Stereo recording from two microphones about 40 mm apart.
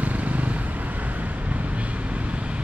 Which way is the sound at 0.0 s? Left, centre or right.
Right.